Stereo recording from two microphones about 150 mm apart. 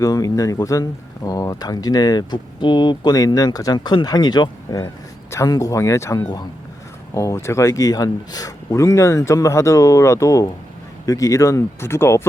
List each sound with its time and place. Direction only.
0.0 s speech: 25° left (ahead or behind)